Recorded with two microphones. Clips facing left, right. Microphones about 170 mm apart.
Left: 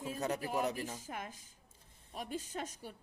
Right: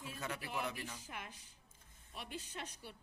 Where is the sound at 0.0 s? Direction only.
40° left (ahead or behind).